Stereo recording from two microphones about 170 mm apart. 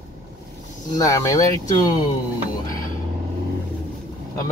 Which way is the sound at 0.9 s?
20° left (ahead or behind).